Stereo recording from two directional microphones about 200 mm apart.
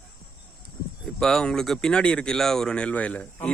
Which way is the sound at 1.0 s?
Centre (ahead or behind).